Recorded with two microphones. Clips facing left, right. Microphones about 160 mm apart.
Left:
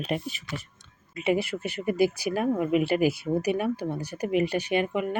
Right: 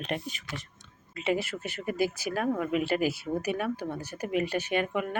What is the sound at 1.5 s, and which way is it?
Speech, 20° left (ahead or behind).